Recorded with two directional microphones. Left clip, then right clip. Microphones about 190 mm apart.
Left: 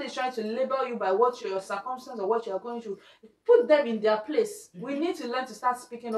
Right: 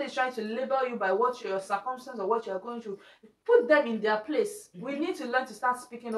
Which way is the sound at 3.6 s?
Centre (ahead or behind).